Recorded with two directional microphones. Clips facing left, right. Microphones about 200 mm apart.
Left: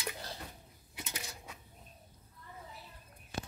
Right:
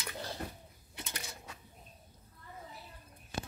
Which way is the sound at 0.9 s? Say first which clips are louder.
Even; 5° left (ahead or behind).